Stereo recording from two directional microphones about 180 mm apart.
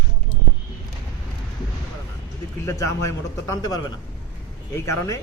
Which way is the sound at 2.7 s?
15° left (ahead or behind).